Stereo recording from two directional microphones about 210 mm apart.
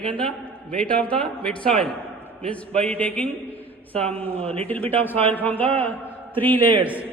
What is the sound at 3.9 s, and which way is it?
Speech, 30° right (ahead or behind).